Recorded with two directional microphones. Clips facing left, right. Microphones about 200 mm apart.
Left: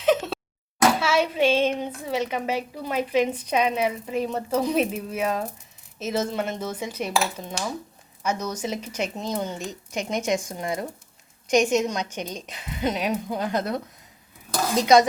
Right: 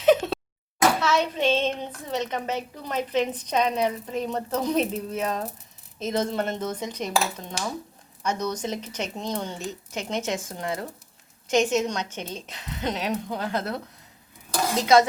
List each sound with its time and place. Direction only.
0.0 s a sound: centre (ahead or behind)
1.0 s a woman's voice: 10° left (ahead or behind)
8.2 s a woman's voice: 10° left (ahead or behind)